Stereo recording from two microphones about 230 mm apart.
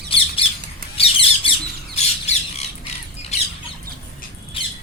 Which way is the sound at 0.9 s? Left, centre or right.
Left.